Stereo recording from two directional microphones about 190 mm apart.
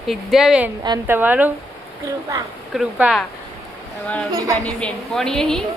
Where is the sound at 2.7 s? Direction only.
5° right (ahead or behind).